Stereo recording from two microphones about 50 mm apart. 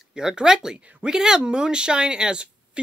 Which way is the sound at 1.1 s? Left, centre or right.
Centre.